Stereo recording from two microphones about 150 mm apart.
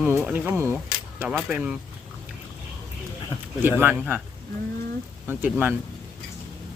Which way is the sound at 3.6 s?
15° right (ahead or behind).